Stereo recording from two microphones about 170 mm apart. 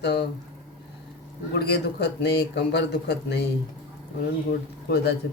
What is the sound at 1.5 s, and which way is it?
Speech, 70° left (ahead or behind).